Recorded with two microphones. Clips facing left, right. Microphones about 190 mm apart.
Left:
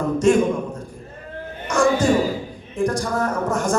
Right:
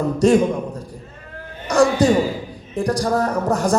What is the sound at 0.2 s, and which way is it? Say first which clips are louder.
Speech: right 2 dB; 35° right (ahead or behind).